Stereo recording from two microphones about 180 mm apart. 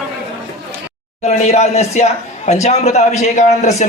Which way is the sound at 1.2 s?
40° left (ahead or behind).